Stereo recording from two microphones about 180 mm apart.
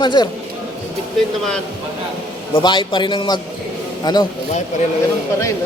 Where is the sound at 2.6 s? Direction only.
25° left (ahead or behind).